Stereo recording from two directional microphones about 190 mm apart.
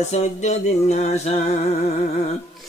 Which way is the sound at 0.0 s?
35° left (ahead or behind).